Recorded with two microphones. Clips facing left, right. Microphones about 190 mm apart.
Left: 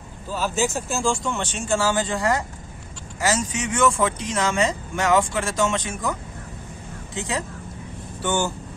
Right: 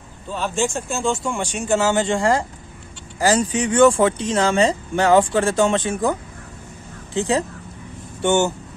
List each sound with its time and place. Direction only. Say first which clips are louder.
0.3 s speech: right 1 dB; 5° left (ahead or behind)
1.7 s speech: right 4 dB; 20° right (ahead or behind)
7.2 s speech: right 8 dB; 30° right (ahead or behind)